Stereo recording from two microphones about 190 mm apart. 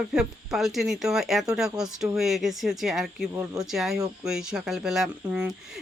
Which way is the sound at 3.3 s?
15° right (ahead or behind).